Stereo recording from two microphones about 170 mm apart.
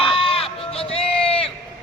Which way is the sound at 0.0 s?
30° left (ahead or behind).